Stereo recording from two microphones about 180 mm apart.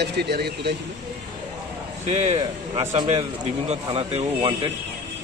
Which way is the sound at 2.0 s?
35° right (ahead or behind).